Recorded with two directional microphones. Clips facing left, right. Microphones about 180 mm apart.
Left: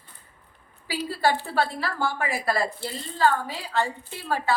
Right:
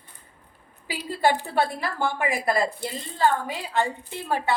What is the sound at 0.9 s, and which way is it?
A woman's voice, 15° right (ahead or behind).